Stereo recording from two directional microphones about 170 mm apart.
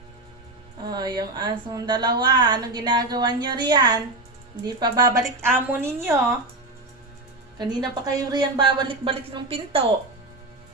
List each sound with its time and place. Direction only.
0.9 s a woman's voice: 25° right (ahead or behind)
7.6 s a woman's voice: 25° right (ahead or behind)